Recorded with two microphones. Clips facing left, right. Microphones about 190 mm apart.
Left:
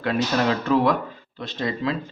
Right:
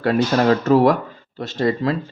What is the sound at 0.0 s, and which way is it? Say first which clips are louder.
Speech: right 5 dB; 45° right (ahead or behind).